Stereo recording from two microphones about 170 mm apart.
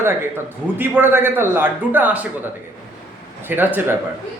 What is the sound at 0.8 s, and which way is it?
Speech, 10° right (ahead or behind).